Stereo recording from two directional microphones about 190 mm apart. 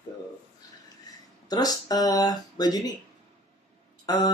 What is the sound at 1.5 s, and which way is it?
Speech, 20° left (ahead or behind).